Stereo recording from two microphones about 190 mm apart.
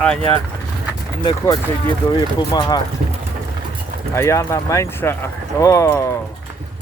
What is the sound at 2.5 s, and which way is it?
Speech, 20° left (ahead or behind).